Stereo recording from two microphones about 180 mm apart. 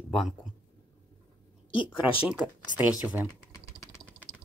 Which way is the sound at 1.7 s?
30° left (ahead or behind).